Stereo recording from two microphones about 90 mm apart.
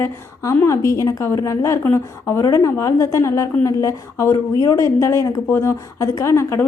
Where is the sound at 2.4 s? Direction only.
40° left (ahead or behind).